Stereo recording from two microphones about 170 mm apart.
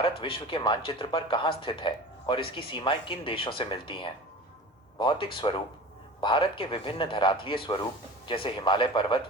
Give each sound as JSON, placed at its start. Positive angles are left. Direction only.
{"t": 0.0, "sound": "speech", "side_deg": 30}